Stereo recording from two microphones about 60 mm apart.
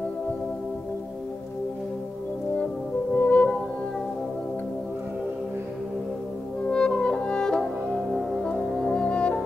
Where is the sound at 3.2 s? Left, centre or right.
Left.